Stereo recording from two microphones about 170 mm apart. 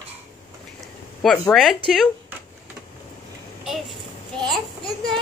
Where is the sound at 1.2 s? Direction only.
Centre (ahead or behind).